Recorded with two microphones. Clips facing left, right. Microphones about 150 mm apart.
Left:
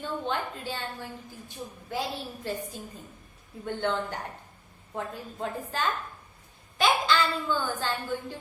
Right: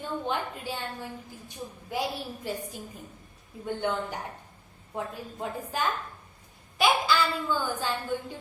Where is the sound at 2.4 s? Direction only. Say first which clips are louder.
Left 1 dB; 15° right (ahead or behind).